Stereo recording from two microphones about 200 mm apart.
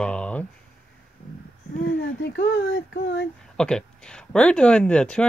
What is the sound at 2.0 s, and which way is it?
Speech, 55° left (ahead or behind).